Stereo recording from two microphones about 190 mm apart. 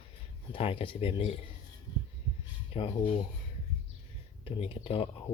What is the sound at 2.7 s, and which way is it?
Speech, 30° left (ahead or behind).